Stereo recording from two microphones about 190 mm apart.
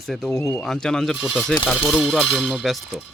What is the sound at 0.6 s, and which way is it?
Clang, 5° left (ahead or behind).